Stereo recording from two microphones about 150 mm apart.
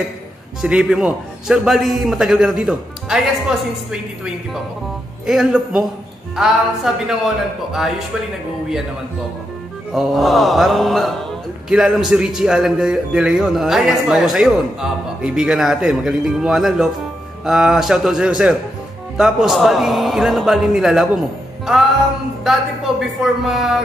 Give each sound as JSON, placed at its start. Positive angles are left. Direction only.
{"t": 0.6, "sound": "a man's voice", "side_deg": -5}
{"t": 9.9, "sound": "a man's voice", "side_deg": 0}
{"t": 22.4, "sound": "a man's voice", "side_deg": 0}